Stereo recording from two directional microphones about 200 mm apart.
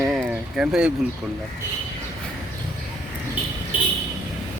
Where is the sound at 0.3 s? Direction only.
5° right (ahead or behind).